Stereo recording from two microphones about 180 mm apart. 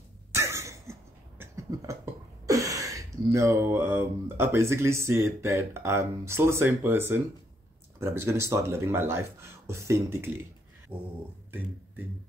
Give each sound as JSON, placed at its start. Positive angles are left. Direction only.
{"t": 0.3, "sound": "cough", "side_deg": -15}
{"t": 1.4, "sound": "beatboxing", "side_deg": -15}
{"t": 2.4, "sound": "speech", "side_deg": -20}